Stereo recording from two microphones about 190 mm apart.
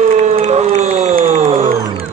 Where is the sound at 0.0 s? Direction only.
35° right (ahead or behind).